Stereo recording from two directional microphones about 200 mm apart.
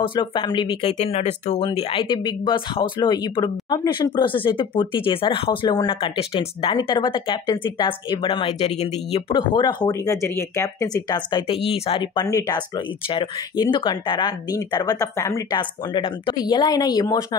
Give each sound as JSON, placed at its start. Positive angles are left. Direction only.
{"t": 0.0, "sound": "speech", "side_deg": 25}